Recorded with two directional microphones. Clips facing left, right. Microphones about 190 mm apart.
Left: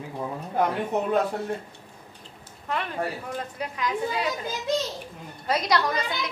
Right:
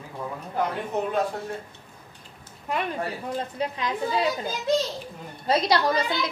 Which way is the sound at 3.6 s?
25° right (ahead or behind).